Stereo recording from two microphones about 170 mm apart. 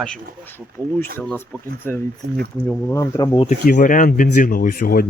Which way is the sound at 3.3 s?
40° left (ahead or behind).